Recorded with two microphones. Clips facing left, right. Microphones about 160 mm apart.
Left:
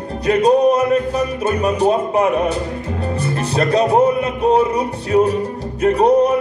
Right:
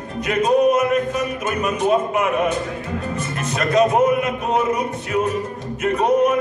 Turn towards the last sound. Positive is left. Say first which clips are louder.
# left 4 dB
turn(degrees=35)  # may be behind; listen again after turning